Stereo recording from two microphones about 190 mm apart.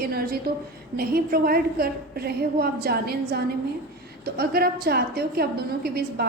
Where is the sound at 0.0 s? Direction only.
50° right (ahead or behind).